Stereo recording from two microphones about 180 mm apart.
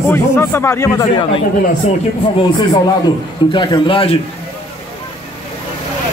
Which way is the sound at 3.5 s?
25° left (ahead or behind).